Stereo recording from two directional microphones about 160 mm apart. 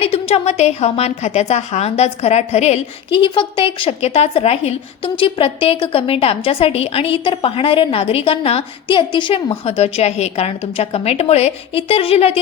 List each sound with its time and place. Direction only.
0.0 s a woman's voice: 35° left (ahead or behind)